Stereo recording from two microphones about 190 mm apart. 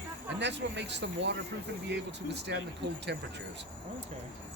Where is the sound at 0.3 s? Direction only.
65° right (ahead or behind).